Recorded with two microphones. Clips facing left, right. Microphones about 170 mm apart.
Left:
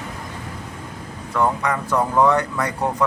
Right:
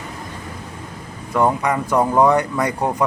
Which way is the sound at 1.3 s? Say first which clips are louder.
Right 3 dB; 15° right (ahead or behind).